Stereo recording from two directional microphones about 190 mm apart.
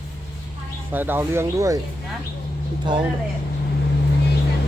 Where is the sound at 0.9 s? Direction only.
10° right (ahead or behind).